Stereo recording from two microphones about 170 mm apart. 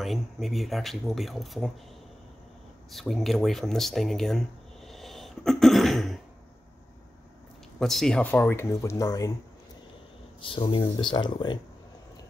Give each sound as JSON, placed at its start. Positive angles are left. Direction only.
{"t": 0.0, "sound": "speech", "side_deg": 0}
{"t": 2.9, "sound": "speech", "side_deg": 0}
{"t": 7.8, "sound": "speech", "side_deg": 0}
{"t": 10.4, "sound": "speech", "side_deg": 30}